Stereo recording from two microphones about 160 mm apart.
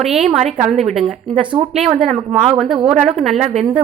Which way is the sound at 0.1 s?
45° right (ahead or behind).